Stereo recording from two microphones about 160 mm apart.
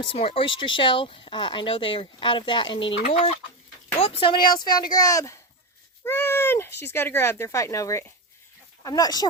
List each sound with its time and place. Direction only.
0.0 s speech: 35° left (ahead or behind)